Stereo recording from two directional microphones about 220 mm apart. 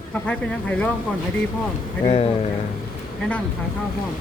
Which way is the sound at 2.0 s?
25° left (ahead or behind).